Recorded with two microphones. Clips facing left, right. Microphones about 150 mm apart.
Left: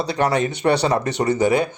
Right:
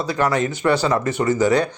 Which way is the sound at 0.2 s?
20° left (ahead or behind).